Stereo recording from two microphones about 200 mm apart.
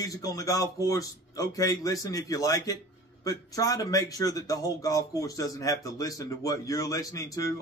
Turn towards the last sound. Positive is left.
turn(degrees=15)  # may be behind; listen again after turning